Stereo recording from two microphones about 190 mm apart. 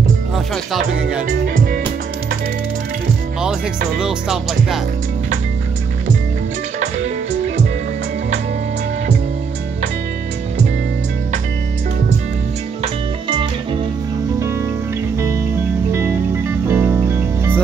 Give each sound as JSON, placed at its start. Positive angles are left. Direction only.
{"t": 4.0, "sound": "music", "side_deg": 0}
{"t": 12.8, "sound": "music", "side_deg": -25}
{"t": 16.6, "sound": "music", "side_deg": -15}